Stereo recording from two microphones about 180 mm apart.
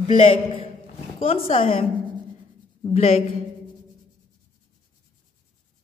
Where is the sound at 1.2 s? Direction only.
30° left (ahead or behind).